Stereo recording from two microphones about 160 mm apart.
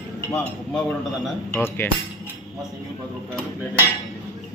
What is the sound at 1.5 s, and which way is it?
Speech, 15° left (ahead or behind).